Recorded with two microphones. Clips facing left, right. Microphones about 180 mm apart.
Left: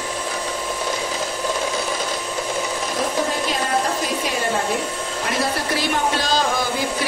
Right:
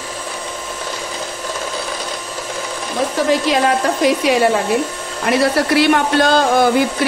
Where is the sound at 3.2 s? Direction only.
80° right.